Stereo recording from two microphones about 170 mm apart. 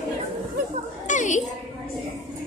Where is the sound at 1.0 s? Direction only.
45° left (ahead or behind).